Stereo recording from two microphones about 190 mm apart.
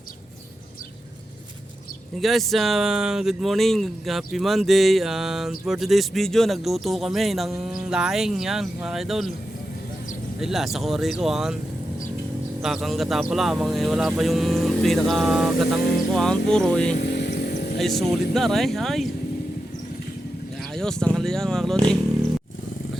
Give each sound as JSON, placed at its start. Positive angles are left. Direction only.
{"t": 2.2, "sound": "speech", "side_deg": 0}
{"t": 10.4, "sound": "speech", "side_deg": 0}
{"t": 12.6, "sound": "speech", "side_deg": 0}
{"t": 17.0, "sound": "vehicle", "side_deg": 60}
{"t": 17.7, "sound": "speech", "side_deg": 0}
{"t": 20.7, "sound": "speech", "side_deg": 5}